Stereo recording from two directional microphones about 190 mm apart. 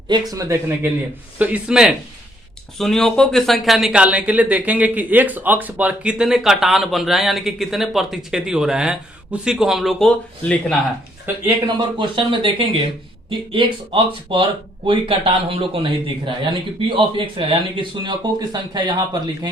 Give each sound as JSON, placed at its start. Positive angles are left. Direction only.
{"t": 0.1, "sound": "speech", "side_deg": -20}
{"t": 11.4, "sound": "a man's voice", "side_deg": -25}